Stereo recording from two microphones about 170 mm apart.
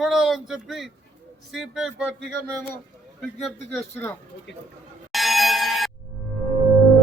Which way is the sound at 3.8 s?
15° left (ahead or behind).